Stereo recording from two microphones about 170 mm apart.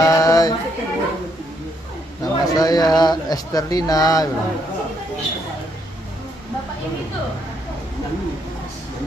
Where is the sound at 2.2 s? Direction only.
20° left (ahead or behind).